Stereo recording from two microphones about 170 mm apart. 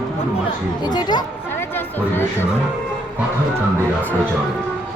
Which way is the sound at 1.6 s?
10° left (ahead or behind).